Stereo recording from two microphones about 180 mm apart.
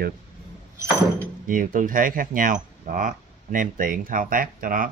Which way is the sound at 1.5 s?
50° right (ahead or behind).